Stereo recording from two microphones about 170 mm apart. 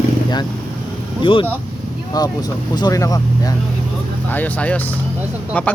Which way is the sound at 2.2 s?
25° left (ahead or behind).